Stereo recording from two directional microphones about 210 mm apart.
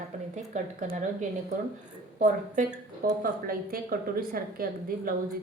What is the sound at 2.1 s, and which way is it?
A woman's voice, 40° right (ahead or behind).